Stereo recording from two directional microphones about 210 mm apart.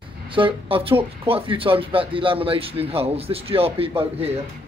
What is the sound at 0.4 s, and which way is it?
Speech, 25° right (ahead or behind).